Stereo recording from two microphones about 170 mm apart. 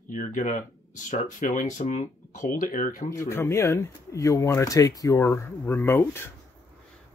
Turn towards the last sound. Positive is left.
turn(degrees=15)  # may be behind; listen again after turning